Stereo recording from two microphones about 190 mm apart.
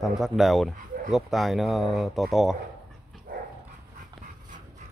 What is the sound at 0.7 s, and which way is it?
Dog, 45° right (ahead or behind).